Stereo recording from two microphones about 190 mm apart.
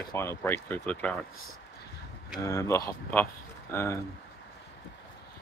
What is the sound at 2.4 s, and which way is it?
Speech, 15° left (ahead or behind).